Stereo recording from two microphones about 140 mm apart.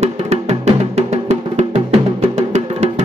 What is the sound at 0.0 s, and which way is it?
Music, 50° right (ahead or behind).